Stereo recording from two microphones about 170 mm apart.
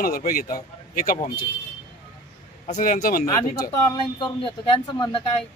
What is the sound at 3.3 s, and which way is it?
Speech, 20° left (ahead or behind).